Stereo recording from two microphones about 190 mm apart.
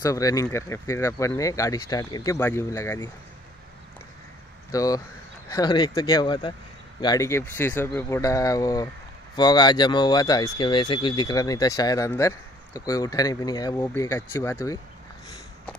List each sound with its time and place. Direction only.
0.0 s speech: 20° left (ahead or behind)
4.6 s speech: 20° left (ahead or behind)